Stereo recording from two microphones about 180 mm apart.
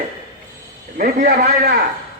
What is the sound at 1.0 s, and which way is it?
Speech, 55° right (ahead or behind).